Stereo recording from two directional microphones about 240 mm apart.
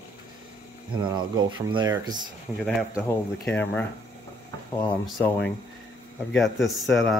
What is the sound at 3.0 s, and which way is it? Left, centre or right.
Speech, centre.